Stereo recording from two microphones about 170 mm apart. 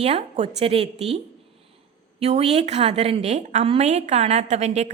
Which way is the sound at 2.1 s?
40° right (ahead or behind).